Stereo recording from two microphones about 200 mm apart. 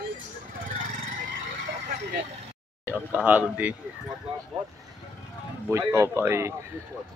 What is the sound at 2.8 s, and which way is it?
Speech, 5° right (ahead or behind).